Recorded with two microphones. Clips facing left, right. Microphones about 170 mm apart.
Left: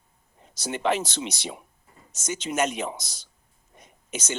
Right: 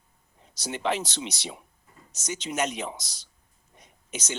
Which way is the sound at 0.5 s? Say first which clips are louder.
Left 3 dB; 50° left (ahead or behind).